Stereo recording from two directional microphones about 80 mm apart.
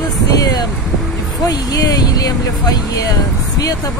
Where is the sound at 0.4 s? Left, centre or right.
Left.